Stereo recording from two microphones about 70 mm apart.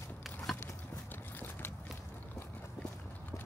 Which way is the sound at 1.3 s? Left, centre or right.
Left.